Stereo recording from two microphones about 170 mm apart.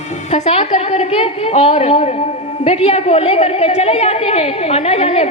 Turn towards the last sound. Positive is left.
turn(degrees=35)  # may be behind; listen again after turning